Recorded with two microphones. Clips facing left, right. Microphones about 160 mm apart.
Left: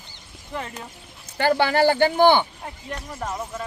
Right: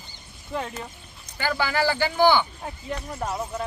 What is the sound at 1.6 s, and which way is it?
Speech, 60° left (ahead or behind).